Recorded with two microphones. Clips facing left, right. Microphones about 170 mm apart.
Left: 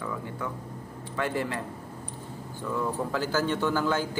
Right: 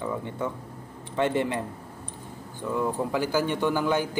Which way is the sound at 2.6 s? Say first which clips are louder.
Right 3 dB; 15° right (ahead or behind).